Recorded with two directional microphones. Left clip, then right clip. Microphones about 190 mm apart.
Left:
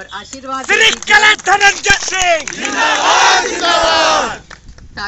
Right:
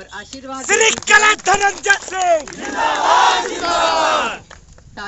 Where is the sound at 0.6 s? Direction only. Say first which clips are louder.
Left 3 dB; 30° right (ahead or behind).